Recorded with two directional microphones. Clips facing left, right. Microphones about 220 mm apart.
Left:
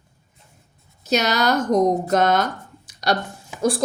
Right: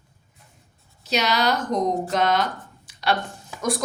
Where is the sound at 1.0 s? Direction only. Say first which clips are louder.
Left 3 dB; 45° left (ahead or behind).